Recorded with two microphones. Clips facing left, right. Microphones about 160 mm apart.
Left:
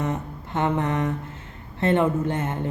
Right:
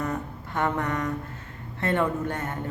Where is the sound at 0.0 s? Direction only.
25° left (ahead or behind).